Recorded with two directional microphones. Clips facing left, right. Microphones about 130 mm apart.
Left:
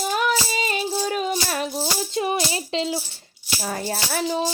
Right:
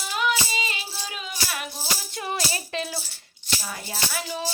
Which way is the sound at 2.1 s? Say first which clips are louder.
Left 6 dB; 20° left (ahead or behind).